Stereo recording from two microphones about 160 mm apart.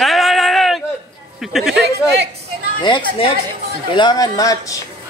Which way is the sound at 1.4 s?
Centre (ahead or behind).